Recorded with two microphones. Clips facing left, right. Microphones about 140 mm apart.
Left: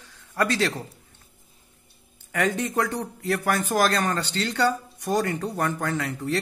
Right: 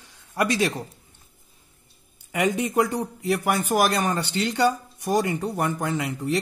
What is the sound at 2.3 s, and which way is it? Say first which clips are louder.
Speech: right 1 dB; 15° right (ahead or behind).